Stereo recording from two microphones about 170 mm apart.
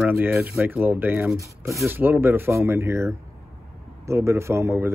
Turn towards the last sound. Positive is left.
turn(degrees=-15)  # may be behind; listen again after turning